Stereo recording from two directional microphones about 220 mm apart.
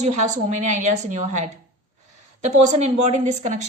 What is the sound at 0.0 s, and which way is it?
A woman's voice, 30° right (ahead or behind).